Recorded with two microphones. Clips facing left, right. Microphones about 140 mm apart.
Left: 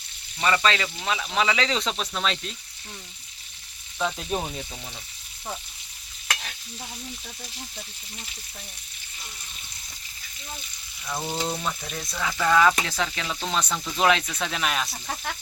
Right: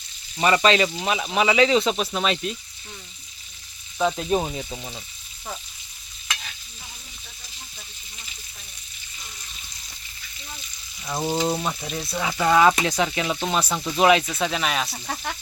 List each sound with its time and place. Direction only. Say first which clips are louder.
0.3 s speech: right 5 dB; 20° right (ahead or behind)
4.4 s speech: right 5 dB; 10° right (ahead or behind)
11.0 s speech: right 5 dB; 20° right (ahead or behind); by 15.4 s centre (ahead or behind)